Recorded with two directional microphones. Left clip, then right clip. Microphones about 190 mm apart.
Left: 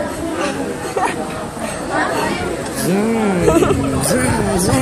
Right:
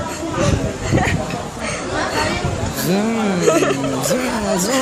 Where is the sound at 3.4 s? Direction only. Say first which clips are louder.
Left 1 dB; 20° right (ahead or behind).